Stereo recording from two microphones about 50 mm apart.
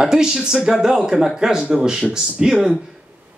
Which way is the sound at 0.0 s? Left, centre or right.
Centre.